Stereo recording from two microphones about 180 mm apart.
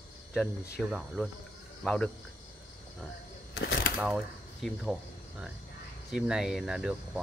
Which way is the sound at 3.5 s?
65° left (ahead or behind).